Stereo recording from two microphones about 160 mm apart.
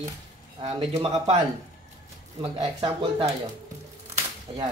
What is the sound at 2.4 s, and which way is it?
Speech, 35° right (ahead or behind).